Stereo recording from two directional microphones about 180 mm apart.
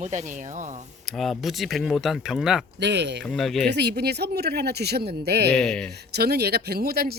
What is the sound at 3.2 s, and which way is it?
Speech, centre (ahead or behind).